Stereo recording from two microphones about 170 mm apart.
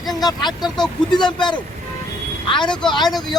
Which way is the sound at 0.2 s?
25° left (ahead or behind).